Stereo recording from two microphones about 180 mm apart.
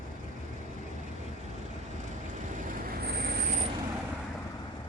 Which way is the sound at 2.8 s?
60° right (ahead or behind).